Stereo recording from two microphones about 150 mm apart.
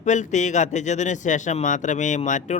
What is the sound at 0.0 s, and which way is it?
Speech, 55° left (ahead or behind).